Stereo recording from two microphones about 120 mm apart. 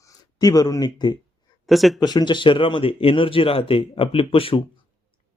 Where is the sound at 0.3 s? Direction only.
30° left (ahead or behind).